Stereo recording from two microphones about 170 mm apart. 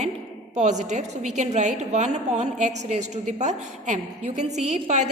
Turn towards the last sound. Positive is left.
turn(degrees=-45)  # may be behind; listen again after turning